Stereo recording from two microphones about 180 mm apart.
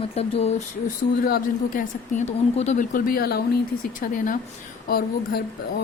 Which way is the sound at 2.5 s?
40° left (ahead or behind).